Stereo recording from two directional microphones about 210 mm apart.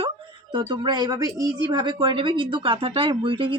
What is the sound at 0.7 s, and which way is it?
Speech, 20° right (ahead or behind).